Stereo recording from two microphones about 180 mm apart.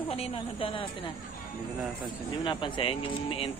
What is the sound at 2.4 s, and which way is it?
Speech, 25° left (ahead or behind).